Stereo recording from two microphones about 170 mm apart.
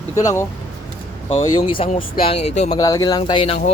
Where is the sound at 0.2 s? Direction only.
20° left (ahead or behind).